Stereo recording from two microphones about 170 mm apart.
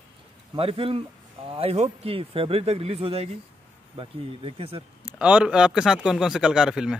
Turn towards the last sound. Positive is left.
turn(degrees=-5)  # may be behind; listen again after turning